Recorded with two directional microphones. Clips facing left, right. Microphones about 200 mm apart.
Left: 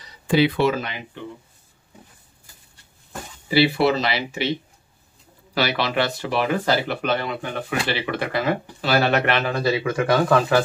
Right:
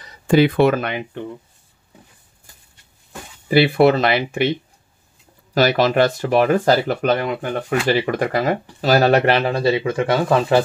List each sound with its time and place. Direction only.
0.0 s speech: 50° right (ahead or behind)
3.4 s speech: 50° right (ahead or behind)
5.5 s speech: 45° right (ahead or behind); by 10.6 s 25° right (ahead or behind)